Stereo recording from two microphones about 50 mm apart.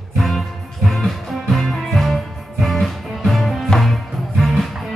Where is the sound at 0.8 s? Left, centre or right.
Centre.